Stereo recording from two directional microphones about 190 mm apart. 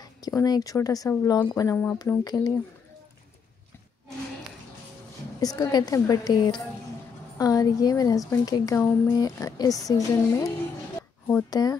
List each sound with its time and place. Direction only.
0.0 s speech: 20° left (ahead or behind)
5.4 s a woman's voice: 20° left (ahead or behind)
11.5 s speech: 20° left (ahead or behind)